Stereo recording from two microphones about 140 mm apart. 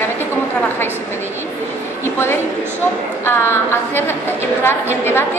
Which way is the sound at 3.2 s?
15° left (ahead or behind).